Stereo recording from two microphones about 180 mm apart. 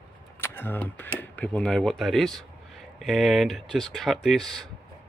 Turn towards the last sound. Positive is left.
turn(degrees=0)  # may be behind; listen again after turning